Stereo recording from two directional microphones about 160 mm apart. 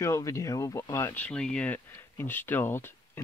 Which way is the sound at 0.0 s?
20° left (ahead or behind).